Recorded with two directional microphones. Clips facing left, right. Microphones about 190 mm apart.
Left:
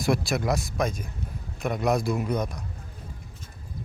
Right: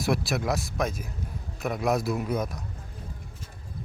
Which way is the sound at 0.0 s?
Centre (ahead or behind).